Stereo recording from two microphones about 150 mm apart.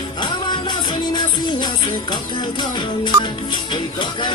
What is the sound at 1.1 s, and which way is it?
Music, 30° left (ahead or behind).